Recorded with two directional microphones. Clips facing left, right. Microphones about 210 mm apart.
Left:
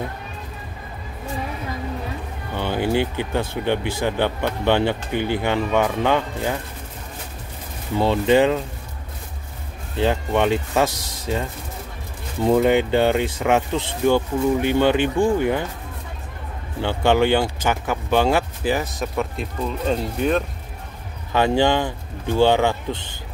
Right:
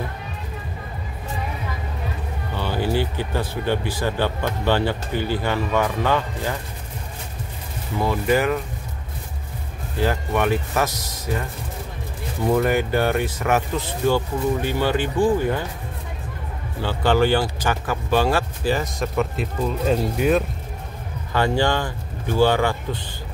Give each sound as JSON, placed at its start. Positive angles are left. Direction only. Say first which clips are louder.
{"t": 2.5, "sound": "speech", "louder": "left 2 dB", "side_deg": 20}
{"t": 8.0, "sound": "speech", "louder": "left 4 dB", "side_deg": 25}
{"t": 9.9, "sound": "speech", "louder": "left 2 dB", "side_deg": 20}
{"t": 12.4, "sound": "speech", "louder": "left 3 dB", "side_deg": 20}
{"t": 16.8, "sound": "speech", "louder": "left 1 dB", "side_deg": 20}
{"t": 18.9, "sound": "speech", "louder": "right 2 dB", "side_deg": 0}
{"t": 21.3, "sound": "speech", "louder": "left 3 dB", "side_deg": 20}